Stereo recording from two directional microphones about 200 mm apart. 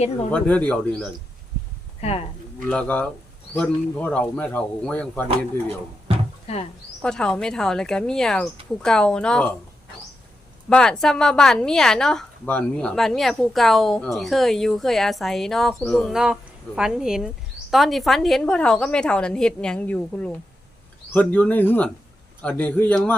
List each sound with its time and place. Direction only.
0.3 s speech: 5° left (ahead or behind)
2.0 s speech: 30° left (ahead or behind)
2.6 s speech: 5° left (ahead or behind)
7.0 s a woman's voice: 5° left (ahead or behind)
10.7 s a woman's voice: 5° left (ahead or behind)